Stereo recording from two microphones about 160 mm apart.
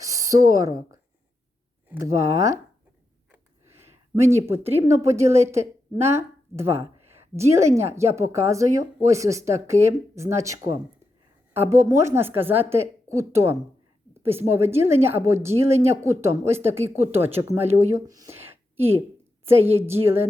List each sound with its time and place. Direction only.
0.0 s a woman's voice: 20° right (ahead or behind)
4.1 s speech: 15° right (ahead or behind)
19.8 s speech: 15° right (ahead or behind)